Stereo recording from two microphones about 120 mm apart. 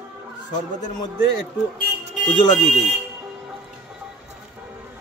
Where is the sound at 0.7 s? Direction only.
90° left.